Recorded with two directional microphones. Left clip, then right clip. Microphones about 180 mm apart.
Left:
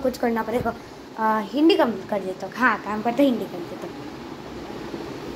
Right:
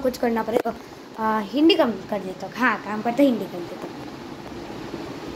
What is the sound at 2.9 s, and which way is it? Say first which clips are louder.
Speech: left 1 dB; centre (ahead or behind).